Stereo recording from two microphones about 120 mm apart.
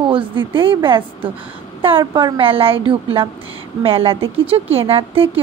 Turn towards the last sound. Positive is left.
turn(degrees=-50)  # may be behind; listen again after turning